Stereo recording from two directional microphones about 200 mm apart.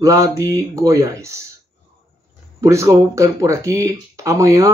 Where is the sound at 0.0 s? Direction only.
15° right (ahead or behind).